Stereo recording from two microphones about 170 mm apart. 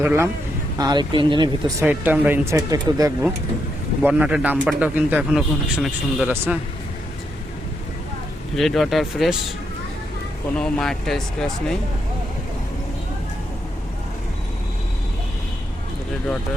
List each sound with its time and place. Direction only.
0.0 s speech: 15° right (ahead or behind)
0.8 s speech: 25° right (ahead or behind)
1.8 s speech: 10° right (ahead or behind)
4.0 s speech: 10° right (ahead or behind)
8.5 s speech: centre (ahead or behind)
10.6 s speech: 5° left (ahead or behind)